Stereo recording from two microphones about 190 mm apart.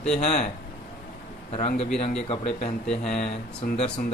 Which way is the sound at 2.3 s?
35° left (ahead or behind).